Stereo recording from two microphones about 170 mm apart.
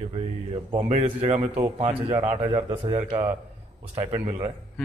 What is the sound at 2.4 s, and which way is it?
Speech, 25° right (ahead or behind).